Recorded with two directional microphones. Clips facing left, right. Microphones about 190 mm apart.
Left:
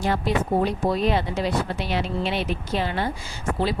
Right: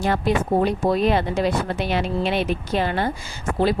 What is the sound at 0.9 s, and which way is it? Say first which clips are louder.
Speech: right 3 dB; 55° right (ahead or behind).